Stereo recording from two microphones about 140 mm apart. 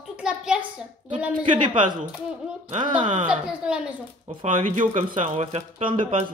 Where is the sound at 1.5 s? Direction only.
35° right (ahead or behind).